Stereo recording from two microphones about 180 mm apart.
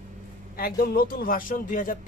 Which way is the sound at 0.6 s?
55° left (ahead or behind).